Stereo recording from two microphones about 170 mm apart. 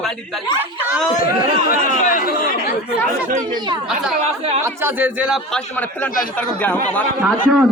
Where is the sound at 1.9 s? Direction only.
50° left (ahead or behind).